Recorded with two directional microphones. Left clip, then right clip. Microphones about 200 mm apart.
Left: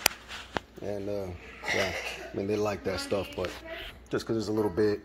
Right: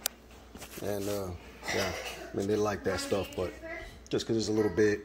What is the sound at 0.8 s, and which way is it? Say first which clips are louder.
Speech: right 3 dB; centre (ahead or behind).